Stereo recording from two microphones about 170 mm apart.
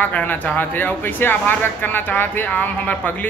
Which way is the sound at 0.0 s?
10° left (ahead or behind).